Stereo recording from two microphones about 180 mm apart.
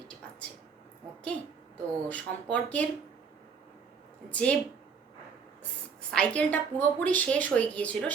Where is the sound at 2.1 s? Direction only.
5° left (ahead or behind).